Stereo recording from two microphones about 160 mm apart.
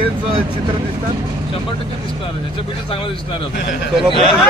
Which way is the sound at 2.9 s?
35° left (ahead or behind).